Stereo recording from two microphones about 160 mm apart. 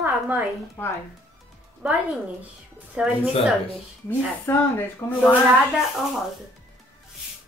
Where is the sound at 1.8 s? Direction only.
10° right (ahead or behind).